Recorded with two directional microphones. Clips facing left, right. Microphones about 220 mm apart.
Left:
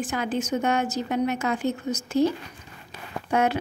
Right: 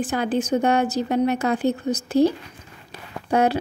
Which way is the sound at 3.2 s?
35° right (ahead or behind).